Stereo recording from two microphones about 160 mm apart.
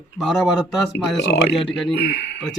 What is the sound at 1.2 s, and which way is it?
Speech, 90° left.